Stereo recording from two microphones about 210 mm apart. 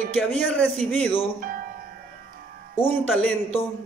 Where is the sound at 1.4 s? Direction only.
40° right (ahead or behind).